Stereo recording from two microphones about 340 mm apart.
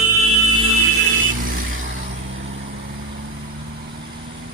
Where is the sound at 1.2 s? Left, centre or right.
Right.